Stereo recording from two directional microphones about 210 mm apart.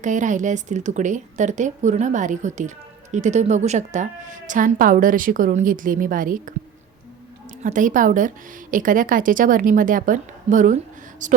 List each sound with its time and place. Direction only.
0.0 s a woman's voice: 35° right (ahead or behind)
7.6 s a woman's voice: 40° right (ahead or behind)